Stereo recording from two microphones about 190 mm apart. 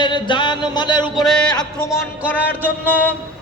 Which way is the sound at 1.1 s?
Centre (ahead or behind).